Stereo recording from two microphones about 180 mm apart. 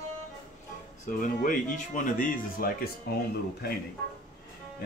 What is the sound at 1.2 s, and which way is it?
Speech, 50° left (ahead or behind).